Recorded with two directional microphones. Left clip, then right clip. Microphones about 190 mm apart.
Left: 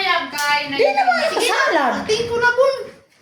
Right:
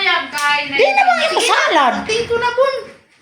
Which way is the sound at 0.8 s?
20° right (ahead or behind).